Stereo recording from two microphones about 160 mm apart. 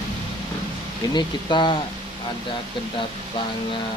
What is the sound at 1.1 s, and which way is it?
Speech, 30° left (ahead or behind).